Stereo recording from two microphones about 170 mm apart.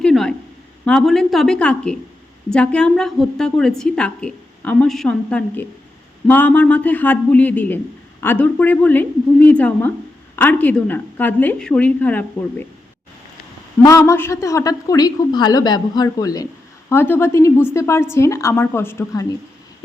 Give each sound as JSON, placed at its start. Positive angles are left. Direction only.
{"t": 0.0, "sound": "a sound", "side_deg": 5}
{"t": 0.9, "sound": "a woman's voice", "side_deg": 0}
{"t": 13.8, "sound": "a woman's voice", "side_deg": 20}